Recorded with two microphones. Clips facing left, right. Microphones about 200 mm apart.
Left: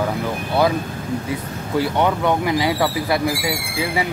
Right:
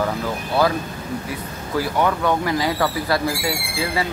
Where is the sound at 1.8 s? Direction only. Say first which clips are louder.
Left 1 dB; 20° left (ahead or behind).